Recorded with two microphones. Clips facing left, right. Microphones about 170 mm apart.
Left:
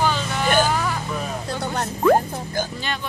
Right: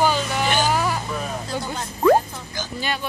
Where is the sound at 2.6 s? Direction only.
55° left (ahead or behind).